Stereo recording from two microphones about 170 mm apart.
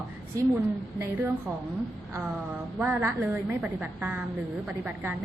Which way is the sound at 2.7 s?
10° right (ahead or behind).